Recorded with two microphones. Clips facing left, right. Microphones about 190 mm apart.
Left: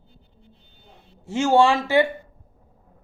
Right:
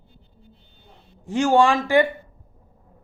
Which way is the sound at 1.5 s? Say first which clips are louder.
Even; 15° left (ahead or behind).